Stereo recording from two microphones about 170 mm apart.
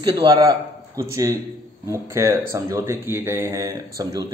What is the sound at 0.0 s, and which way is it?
A man's voice, 25° right (ahead or behind).